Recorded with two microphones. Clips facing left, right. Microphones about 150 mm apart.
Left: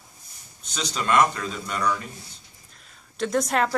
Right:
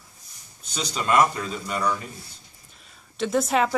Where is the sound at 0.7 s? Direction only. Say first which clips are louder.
Even; 5° right (ahead or behind).